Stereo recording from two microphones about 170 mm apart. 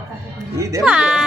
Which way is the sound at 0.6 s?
20° right (ahead or behind).